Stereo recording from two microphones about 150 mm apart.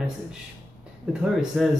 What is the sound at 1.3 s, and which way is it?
Speech, centre (ahead or behind).